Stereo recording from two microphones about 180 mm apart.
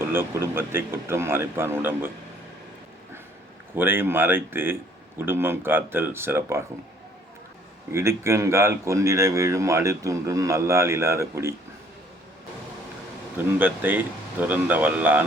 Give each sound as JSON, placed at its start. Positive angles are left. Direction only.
{"t": 0.0, "sound": "speech", "side_deg": -15}
{"t": 3.8, "sound": "speech", "side_deg": -10}
{"t": 7.9, "sound": "speech", "side_deg": -15}
{"t": 13.4, "sound": "speech", "side_deg": -10}